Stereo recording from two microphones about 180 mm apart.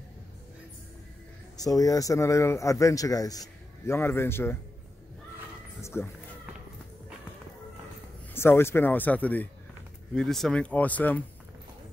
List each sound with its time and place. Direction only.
1.6 s a man's voice: 20° left (ahead or behind)
5.8 s speech: 15° left (ahead or behind)
8.3 s a man's voice: 15° left (ahead or behind)